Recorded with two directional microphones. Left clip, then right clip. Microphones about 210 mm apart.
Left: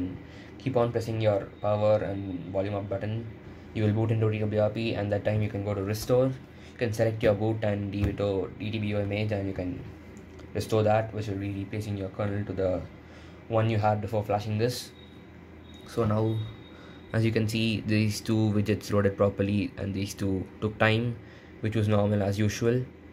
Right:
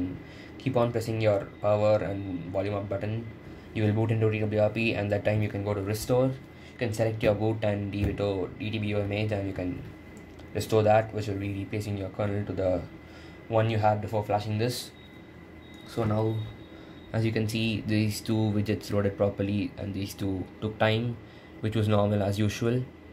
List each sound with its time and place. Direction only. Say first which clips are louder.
0.7 s speech: even; centre (ahead or behind)
15.9 s speech: left 1 dB; 20° left (ahead or behind)
21.6 s speech: right 1 dB; 5° left (ahead or behind)